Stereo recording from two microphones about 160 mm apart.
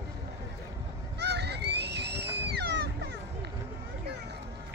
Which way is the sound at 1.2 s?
90° right.